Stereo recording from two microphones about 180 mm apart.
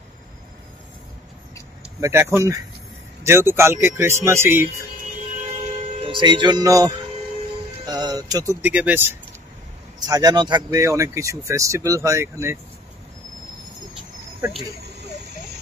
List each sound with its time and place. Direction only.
2.0 s speech: 15° right (ahead or behind)
6.0 s speech: 25° right (ahead or behind); by 9.1 s 10° right (ahead or behind)
10.0 s speech: 20° right (ahead or behind)